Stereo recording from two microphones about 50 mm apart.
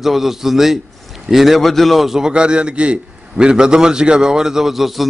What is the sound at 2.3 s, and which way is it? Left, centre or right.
A man's voice, right.